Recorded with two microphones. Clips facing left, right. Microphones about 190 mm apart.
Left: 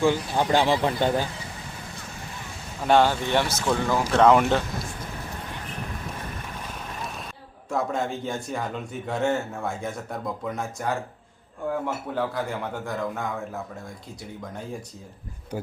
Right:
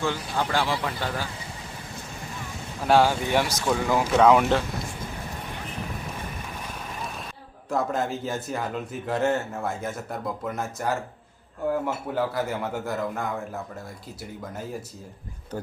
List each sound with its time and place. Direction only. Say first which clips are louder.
0.0 s speech: left 5 dB; 15° left (ahead or behind)
2.8 s speech: even; 5° right (ahead or behind)
6.6 s vehicle: even; centre (ahead or behind)
7.7 s a man's voice: right 1 dB; centre (ahead or behind)
12.1 s a man's voice: right 2 dB; 5° right (ahead or behind)